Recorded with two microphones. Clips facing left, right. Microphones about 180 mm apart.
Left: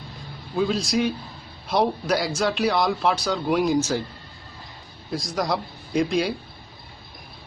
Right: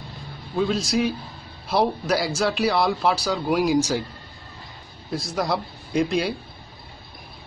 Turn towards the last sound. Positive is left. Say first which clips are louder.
# even
turn(degrees=0)  # may be behind; listen again after turning